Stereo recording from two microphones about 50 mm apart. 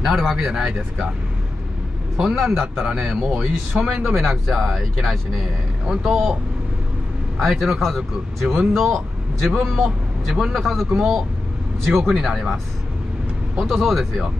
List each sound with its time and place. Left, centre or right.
0.3 s speech: centre
2.1 s speech: centre
7.3 s speech: centre
10.9 s speech: centre
11.8 s speech: centre
13.7 s speech: centre